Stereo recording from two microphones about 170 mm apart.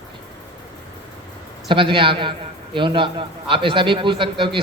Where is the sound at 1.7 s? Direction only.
30° right (ahead or behind).